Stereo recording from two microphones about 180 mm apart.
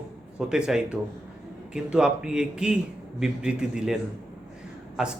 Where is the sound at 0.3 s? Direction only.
5° right (ahead or behind).